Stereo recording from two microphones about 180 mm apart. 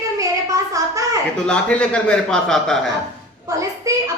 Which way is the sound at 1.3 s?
5° left (ahead or behind).